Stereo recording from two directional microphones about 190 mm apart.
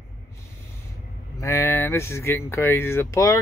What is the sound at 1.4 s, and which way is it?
Speech, 15° left (ahead or behind).